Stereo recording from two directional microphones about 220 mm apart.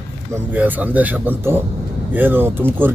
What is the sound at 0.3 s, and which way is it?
Speech, 10° right (ahead or behind).